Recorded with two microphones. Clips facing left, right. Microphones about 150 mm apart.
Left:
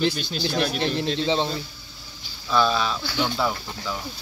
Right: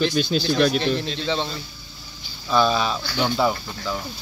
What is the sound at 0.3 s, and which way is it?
Speech, 90° right.